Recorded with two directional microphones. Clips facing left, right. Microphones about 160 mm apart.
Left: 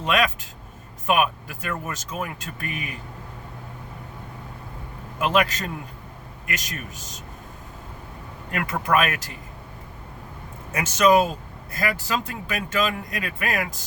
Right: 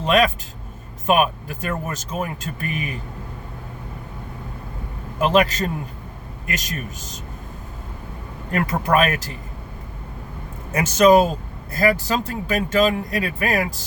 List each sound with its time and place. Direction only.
0.0 s speech: 30° right (ahead or behind)
5.2 s speech: 30° right (ahead or behind)
8.4 s speech: 35° right (ahead or behind)
10.7 s speech: 35° right (ahead or behind)